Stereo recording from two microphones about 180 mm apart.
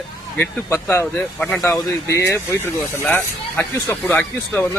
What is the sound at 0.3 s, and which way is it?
Speech, 15° left (ahead or behind).